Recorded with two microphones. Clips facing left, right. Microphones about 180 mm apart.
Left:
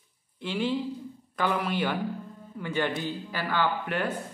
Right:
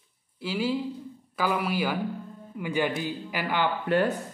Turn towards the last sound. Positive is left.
turn(degrees=-35)  # may be behind; listen again after turning